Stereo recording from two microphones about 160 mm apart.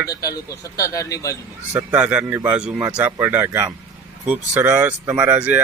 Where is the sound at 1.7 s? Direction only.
10° right (ahead or behind).